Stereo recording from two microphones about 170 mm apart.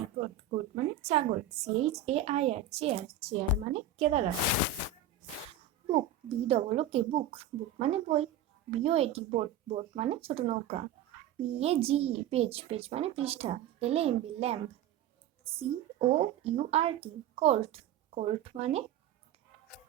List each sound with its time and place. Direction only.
1.0 s speech: 40° right (ahead or behind)
5.9 s speech: 35° right (ahead or behind)